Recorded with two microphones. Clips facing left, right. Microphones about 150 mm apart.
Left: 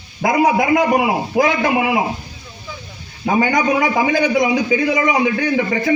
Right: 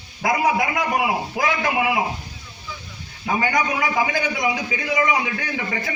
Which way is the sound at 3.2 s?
30° left (ahead or behind).